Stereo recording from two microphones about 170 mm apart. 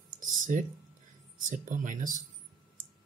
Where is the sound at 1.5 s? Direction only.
50° right (ahead or behind).